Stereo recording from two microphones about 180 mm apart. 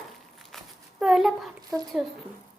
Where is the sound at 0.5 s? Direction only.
Centre (ahead or behind).